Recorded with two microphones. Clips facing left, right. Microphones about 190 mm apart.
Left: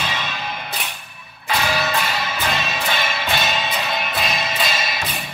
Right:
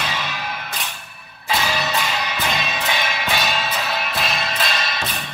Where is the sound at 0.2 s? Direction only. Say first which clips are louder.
Even; 10° right (ahead or behind).